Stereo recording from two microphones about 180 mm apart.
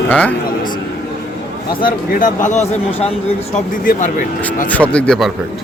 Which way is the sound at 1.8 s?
50° left (ahead or behind).